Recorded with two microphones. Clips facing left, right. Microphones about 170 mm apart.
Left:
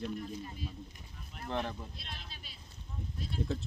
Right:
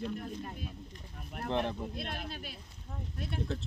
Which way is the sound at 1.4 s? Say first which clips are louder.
Right 4 dB; 60° right (ahead or behind).